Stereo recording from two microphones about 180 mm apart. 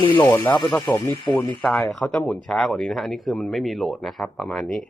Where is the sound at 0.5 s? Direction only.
25° left (ahead or behind).